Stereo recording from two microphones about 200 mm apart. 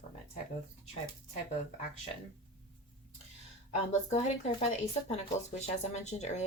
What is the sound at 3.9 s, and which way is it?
A woman's voice, 35° left (ahead or behind).